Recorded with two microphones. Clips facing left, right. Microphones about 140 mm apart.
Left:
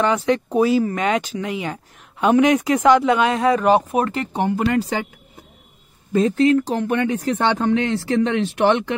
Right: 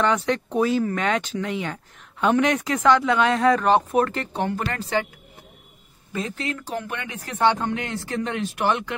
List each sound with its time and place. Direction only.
0.0 s speech: 5° left (ahead or behind)
6.1 s speech: 40° left (ahead or behind)